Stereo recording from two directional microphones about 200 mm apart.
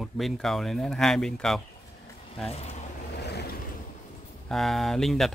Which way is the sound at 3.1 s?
55° left (ahead or behind).